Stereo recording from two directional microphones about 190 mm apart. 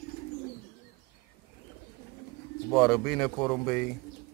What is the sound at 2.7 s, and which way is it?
Speech, centre (ahead or behind).